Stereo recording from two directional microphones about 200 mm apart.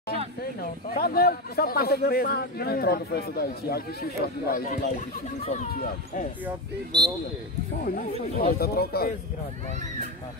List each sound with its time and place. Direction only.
1.0 s speech: 50° left (ahead or behind)
6.9 s speech: 20° right (ahead or behind)
7.8 s speech: 45° left (ahead or behind)